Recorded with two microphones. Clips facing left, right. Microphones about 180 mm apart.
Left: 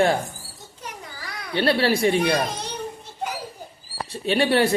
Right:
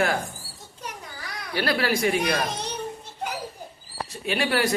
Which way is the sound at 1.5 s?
30° left (ahead or behind).